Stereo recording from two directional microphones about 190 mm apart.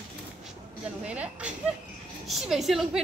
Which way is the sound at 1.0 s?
5° right (ahead or behind).